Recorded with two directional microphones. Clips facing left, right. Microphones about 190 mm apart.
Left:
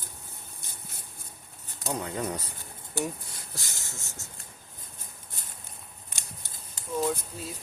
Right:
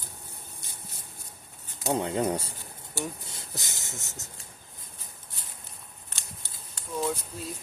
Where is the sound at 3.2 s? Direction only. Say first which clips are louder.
Right 2 dB; 20° right (ahead or behind).